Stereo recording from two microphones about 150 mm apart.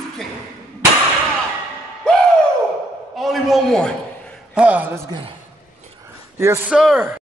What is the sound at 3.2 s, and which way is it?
Speech, centre (ahead or behind).